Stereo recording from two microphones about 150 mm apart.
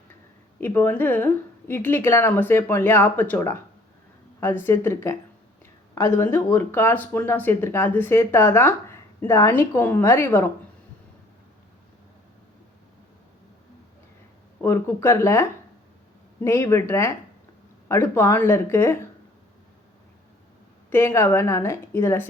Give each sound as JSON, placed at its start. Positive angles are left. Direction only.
{"t": 0.6, "sound": "speech", "side_deg": 15}
{"t": 14.6, "sound": "speech", "side_deg": 15}
{"t": 20.9, "sound": "speech", "side_deg": 20}